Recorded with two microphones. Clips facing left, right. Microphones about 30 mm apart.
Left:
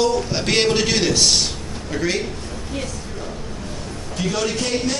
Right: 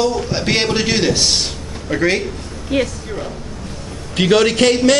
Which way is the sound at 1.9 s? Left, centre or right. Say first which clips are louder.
Right 6 dB; right.